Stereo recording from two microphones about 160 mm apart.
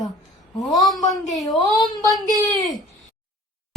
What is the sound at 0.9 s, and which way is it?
A woman's voice, centre (ahead or behind).